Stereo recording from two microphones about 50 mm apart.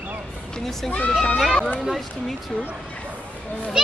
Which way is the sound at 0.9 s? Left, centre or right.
Left.